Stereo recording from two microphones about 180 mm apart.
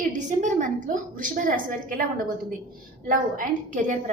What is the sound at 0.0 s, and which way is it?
A woman's voice, 45° right (ahead or behind).